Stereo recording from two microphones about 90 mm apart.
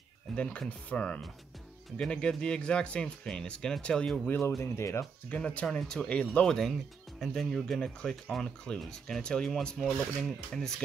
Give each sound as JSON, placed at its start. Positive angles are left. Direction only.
{"t": 0.4, "sound": "speech", "side_deg": 15}
{"t": 4.3, "sound": "speech", "side_deg": 30}
{"t": 5.3, "sound": "speech", "side_deg": 15}